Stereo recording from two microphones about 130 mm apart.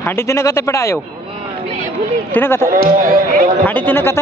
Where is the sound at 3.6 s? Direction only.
15° left (ahead or behind).